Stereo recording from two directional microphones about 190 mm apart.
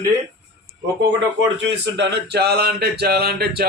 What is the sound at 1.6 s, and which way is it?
A man's voice, 65° right (ahead or behind).